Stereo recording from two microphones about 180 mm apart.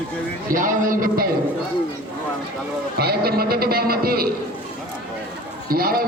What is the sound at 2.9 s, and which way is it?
A man's voice, 60° right (ahead or behind).